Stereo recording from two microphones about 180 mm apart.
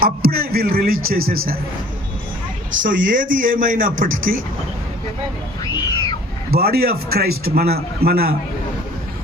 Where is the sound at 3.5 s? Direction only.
50° right (ahead or behind).